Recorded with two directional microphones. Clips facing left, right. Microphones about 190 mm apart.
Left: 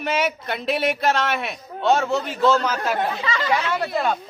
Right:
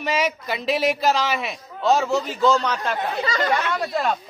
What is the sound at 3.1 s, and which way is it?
Speech, 40° right (ahead or behind).